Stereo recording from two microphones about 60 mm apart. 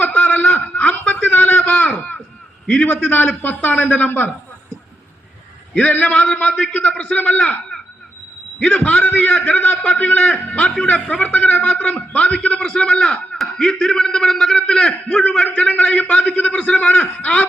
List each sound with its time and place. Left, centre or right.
0.0 s a sound: left
2.6 s a man's voice: left
5.7 s a man's voice: left
8.6 s a man's voice: left
12.4 s a man's voice: centre